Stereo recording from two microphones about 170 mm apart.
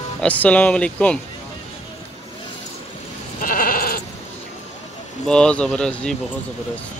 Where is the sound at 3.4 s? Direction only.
55° left (ahead or behind).